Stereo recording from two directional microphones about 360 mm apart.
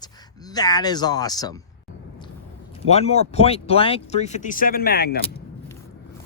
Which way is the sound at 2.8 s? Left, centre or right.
Centre.